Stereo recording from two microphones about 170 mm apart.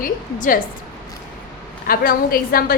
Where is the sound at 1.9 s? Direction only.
60° left (ahead or behind).